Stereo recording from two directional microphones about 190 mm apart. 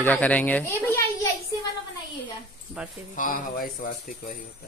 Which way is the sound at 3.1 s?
45° left (ahead or behind).